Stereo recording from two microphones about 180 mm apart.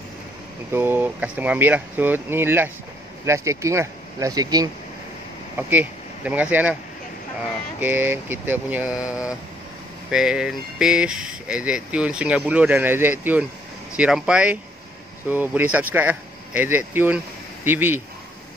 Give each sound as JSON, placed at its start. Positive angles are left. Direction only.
{"t": 0.7, "sound": "speech", "side_deg": -10}
{"t": 5.6, "sound": "speech", "side_deg": -10}
{"t": 7.8, "sound": "speech", "side_deg": -10}
{"t": 10.1, "sound": "speech", "side_deg": -5}